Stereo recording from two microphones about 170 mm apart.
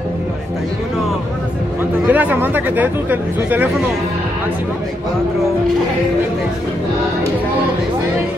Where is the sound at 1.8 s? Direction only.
10° right (ahead or behind).